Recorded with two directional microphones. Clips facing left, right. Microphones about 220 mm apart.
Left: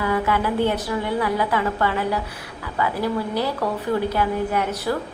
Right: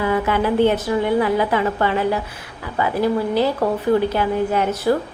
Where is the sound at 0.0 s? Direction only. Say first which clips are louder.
Right 3 dB; 25° right (ahead or behind).